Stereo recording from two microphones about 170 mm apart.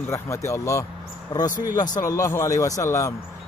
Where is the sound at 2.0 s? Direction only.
20° left (ahead or behind).